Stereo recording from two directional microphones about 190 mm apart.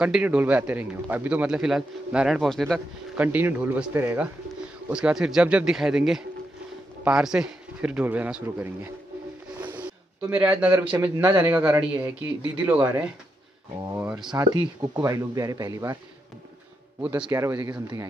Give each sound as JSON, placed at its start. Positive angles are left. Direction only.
{"t": 0.0, "sound": "speech", "side_deg": -5}
{"t": 3.2, "sound": "speech", "side_deg": -10}
{"t": 9.6, "sound": "a sound", "side_deg": -5}
{"t": 10.8, "sound": "speech", "side_deg": -5}
{"t": 14.3, "sound": "speech", "side_deg": -20}
{"t": 17.0, "sound": "speech", "side_deg": -10}